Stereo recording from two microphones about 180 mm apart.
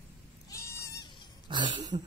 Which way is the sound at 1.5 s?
25° right (ahead or behind).